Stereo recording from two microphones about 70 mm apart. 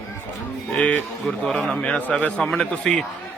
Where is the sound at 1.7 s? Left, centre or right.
Centre.